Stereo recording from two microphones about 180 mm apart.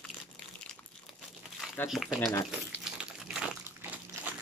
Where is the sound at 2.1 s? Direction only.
15° left (ahead or behind).